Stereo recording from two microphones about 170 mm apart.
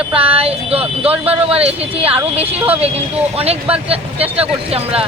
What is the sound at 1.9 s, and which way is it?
Speech, 35° right (ahead or behind).